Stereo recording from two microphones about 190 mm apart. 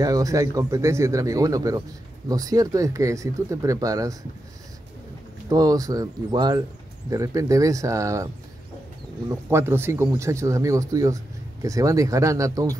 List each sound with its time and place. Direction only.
0.0 s speech: 20° right (ahead or behind)
5.5 s speech: 20° right (ahead or behind)
9.3 s speech: 15° right (ahead or behind)